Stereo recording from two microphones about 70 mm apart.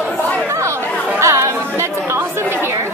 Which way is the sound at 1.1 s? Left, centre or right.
Right.